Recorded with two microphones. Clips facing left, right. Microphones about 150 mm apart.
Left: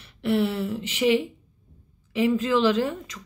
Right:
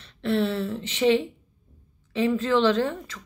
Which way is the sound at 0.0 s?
10° left (ahead or behind).